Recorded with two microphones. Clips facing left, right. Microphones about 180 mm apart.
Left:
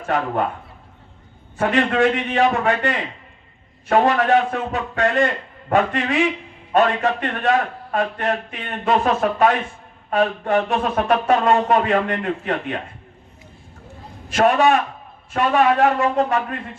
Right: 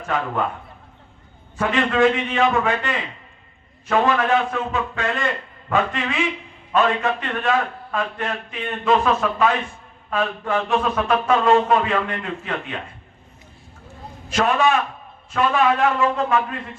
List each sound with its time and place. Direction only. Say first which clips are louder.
1.6 s a man's voice: left 1 dB; 40° left (ahead or behind)
14.3 s a man's voice: left 3 dB; 40° left (ahead or behind)